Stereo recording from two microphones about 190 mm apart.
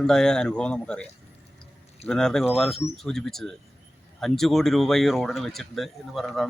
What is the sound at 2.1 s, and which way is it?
Speech, 5° left (ahead or behind).